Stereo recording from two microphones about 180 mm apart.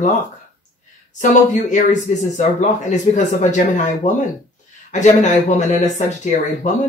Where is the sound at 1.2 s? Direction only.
45° left (ahead or behind).